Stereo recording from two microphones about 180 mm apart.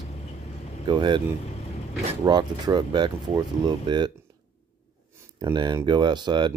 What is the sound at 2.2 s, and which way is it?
Speech, 20° right (ahead or behind).